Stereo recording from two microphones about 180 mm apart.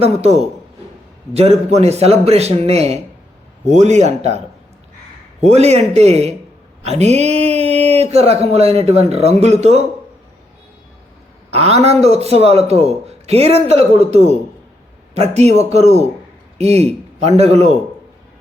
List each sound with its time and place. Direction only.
0.0 s speech: 35° right (ahead or behind)
11.5 s a man's voice: 35° right (ahead or behind)